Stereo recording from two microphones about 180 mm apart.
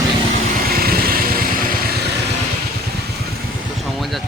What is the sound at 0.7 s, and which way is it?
Vehicle, 55° right (ahead or behind).